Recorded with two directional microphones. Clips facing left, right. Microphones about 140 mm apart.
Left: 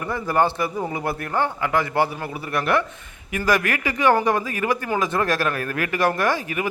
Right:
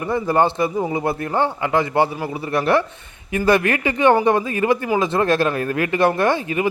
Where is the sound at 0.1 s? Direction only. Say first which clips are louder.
Right 3 dB; 20° right (ahead or behind).